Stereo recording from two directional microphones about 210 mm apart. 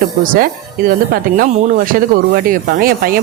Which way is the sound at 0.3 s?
45° right (ahead or behind).